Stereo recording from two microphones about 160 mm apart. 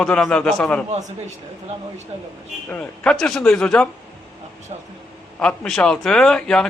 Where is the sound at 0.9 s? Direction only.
45° right (ahead or behind).